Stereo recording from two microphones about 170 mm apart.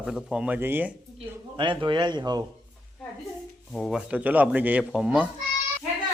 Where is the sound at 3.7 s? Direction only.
Centre (ahead or behind).